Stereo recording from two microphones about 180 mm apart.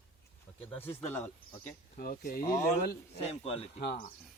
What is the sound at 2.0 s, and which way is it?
Speech, 55° left (ahead or behind).